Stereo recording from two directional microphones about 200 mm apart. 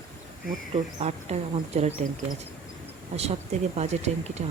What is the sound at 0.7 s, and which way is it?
Speech, 35° right (ahead or behind).